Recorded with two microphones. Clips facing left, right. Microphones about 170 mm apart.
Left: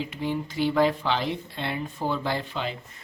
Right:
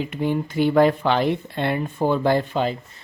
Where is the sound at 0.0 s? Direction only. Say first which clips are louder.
Right 6 dB; 55° right (ahead or behind).